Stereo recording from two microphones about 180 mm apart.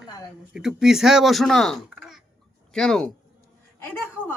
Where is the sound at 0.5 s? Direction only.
Centre (ahead or behind).